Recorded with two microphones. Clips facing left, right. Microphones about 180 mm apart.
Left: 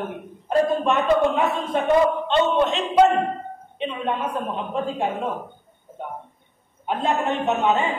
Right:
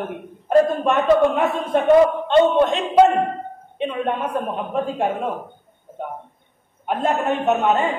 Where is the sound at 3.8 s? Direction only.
50° right (ahead or behind).